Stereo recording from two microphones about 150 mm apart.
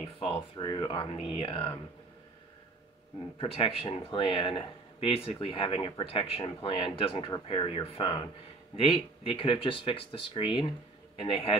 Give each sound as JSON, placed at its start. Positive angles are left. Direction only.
{"t": 0.0, "sound": "speech", "side_deg": 35}
{"t": 3.3, "sound": "speech", "side_deg": 35}